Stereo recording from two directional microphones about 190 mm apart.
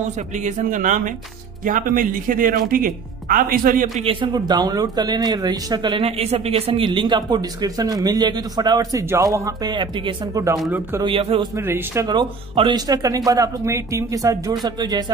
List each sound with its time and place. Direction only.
0.4 s speech: 40° right (ahead or behind)
4.0 s a man's voice: 25° right (ahead or behind); by 11.0 s 10° right (ahead or behind)
11.0 s speech: 25° right (ahead or behind)
11.5 s speech: 15° right (ahead or behind)